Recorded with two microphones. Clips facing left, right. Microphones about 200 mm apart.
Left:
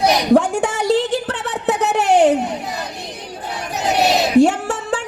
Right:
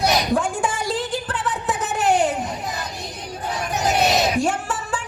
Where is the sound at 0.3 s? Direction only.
65° left (ahead or behind).